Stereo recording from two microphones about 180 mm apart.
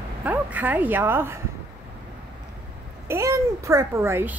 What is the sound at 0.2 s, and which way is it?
Speech, 10° right (ahead or behind).